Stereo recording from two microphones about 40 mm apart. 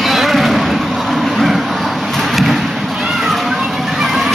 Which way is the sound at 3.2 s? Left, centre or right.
Centre.